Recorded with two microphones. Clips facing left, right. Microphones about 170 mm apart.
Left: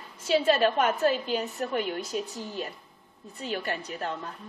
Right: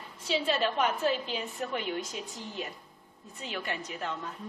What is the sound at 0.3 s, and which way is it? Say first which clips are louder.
A woman's voice: left 6 dB; 50° left (ahead or behind).